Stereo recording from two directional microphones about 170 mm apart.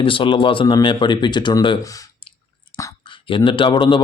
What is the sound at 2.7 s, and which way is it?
Whispering, 30° left (ahead or behind).